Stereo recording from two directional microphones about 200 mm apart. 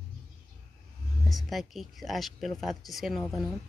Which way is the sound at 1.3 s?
Centre (ahead or behind).